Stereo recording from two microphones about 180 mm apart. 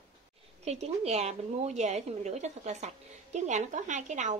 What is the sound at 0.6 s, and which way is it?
A woman's voice, 35° right (ahead or behind).